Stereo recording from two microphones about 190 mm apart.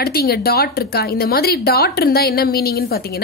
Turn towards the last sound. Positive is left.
turn(degrees=55)  # may be behind; listen again after turning